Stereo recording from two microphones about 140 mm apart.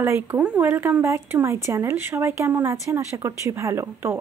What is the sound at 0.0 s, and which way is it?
Speech, 20° right (ahead or behind).